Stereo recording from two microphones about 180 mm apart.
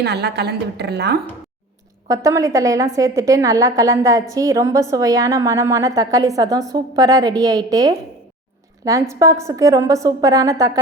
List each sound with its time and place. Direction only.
0.0 s a woman's voice: 65° right (ahead or behind)
2.0 s a woman's voice: 20° right (ahead or behind)